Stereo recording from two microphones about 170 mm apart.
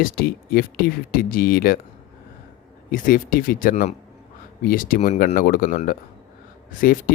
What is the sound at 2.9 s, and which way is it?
Speech, 55° left (ahead or behind).